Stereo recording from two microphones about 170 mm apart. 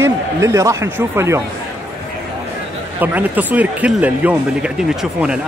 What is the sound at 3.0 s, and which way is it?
Speech, 10° right (ahead or behind).